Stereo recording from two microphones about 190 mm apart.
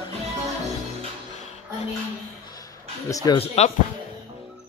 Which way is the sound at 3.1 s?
20° left (ahead or behind).